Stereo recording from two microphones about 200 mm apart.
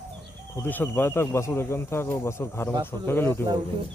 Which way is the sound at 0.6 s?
10° left (ahead or behind).